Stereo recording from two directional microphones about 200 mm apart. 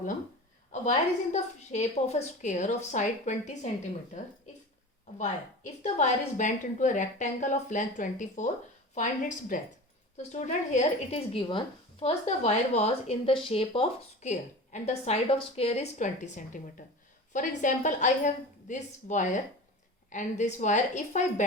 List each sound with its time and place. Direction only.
0.7 s speech: 35° left (ahead or behind)
5.8 s speech: 35° left (ahead or behind)
9.5 s speech: 40° left (ahead or behind)